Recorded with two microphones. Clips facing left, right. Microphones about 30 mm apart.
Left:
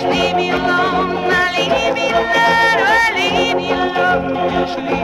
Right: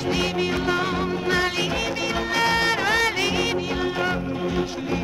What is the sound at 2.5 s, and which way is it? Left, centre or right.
Speech, left.